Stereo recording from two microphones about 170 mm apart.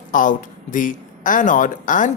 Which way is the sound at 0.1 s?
50° left (ahead or behind).